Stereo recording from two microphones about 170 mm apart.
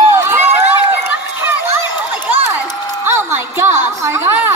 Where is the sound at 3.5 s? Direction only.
15° right (ahead or behind).